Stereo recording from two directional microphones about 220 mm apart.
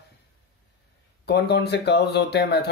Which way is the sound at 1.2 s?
50° left (ahead or behind).